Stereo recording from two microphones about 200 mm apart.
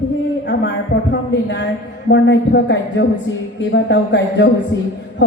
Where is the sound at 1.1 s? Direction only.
60° left (ahead or behind).